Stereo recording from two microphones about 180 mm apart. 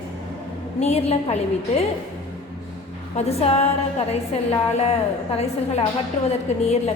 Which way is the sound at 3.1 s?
35° left (ahead or behind).